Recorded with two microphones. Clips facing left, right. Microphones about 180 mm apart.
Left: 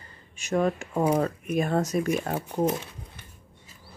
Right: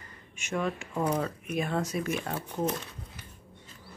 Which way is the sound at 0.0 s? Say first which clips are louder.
Right 1 dB; 30° left (ahead or behind).